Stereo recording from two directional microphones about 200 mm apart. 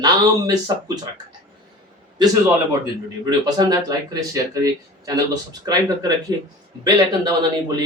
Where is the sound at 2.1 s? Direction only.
20° right (ahead or behind).